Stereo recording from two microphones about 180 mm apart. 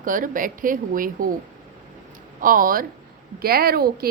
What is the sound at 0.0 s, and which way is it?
Speech, 50° right (ahead or behind).